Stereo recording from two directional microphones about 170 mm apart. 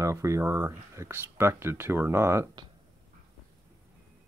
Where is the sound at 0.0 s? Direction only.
20° right (ahead or behind).